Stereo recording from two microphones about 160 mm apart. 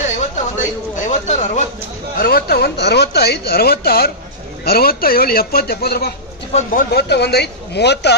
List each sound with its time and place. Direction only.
0.6 s a sound: 50° left (ahead or behind)
2.1 s a man's voice: 75° left (ahead or behind)
6.5 s speech: 55° left (ahead or behind); by 8.1 s 90° left